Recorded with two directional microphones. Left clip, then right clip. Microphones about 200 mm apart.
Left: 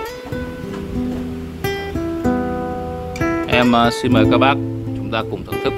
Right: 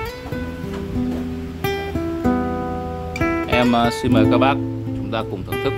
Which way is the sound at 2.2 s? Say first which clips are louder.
Left 1 dB; 25° right (ahead or behind).